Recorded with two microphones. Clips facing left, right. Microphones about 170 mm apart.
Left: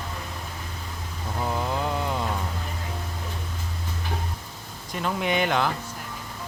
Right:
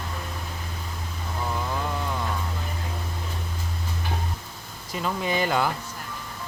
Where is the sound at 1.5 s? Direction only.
20° left (ahead or behind).